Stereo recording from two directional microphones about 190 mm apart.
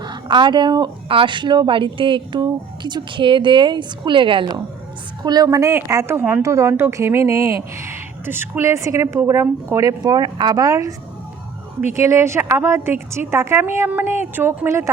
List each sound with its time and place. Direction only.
0.0 s a woman's voice: 25° right (ahead or behind)
11.9 s a woman's voice: 15° right (ahead or behind)